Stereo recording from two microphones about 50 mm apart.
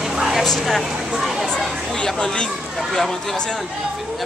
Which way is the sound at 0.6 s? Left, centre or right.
Centre.